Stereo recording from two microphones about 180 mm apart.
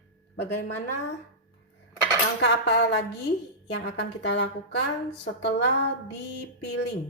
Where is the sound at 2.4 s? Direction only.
70° left (ahead or behind).